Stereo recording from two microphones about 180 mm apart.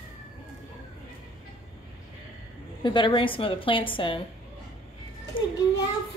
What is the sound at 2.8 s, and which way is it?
A woman's voice, 25° left (ahead or behind).